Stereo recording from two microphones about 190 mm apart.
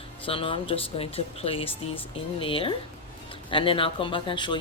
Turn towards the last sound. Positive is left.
turn(degrees=25)  # may be behind; listen again after turning